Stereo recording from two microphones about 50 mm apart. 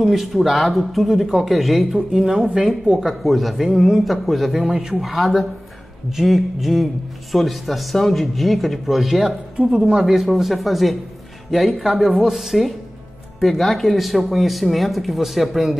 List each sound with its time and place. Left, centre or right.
0.0 s speech: centre
3.0 s speech: centre
9.7 s speech: centre